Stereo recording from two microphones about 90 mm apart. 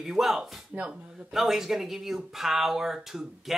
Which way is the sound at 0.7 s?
15° right (ahead or behind).